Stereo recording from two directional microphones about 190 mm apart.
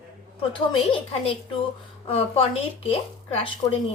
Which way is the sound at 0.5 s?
25° left (ahead or behind).